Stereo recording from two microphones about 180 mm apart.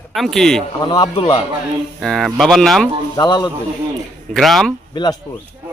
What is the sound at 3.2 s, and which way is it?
Speech, 25° left (ahead or behind).